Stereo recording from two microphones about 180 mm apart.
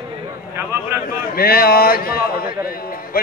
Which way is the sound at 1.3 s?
55° left (ahead or behind).